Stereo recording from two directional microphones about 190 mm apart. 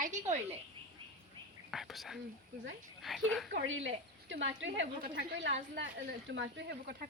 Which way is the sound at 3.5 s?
80° right.